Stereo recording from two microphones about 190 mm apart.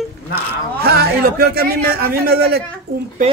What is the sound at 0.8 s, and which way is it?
A man's voice, 55° right (ahead or behind).